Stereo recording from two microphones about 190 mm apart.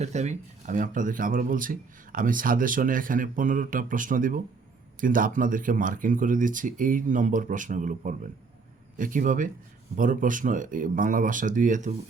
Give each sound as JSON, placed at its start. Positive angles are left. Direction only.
{"t": 0.0, "sound": "speech", "side_deg": -35}